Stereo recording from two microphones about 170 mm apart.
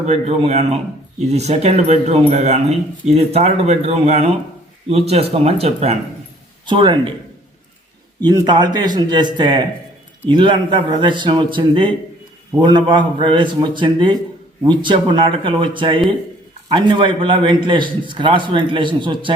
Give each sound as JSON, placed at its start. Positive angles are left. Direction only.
{"t": 0.0, "sound": "a man's voice", "side_deg": -40}
{"t": 8.2, "sound": "a man's voice", "side_deg": -25}